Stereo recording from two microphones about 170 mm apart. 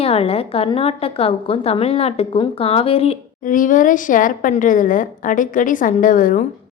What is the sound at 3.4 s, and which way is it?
A woman's voice, 50° left (ahead or behind).